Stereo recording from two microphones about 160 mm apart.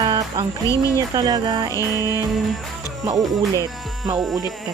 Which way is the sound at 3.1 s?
20° right (ahead or behind).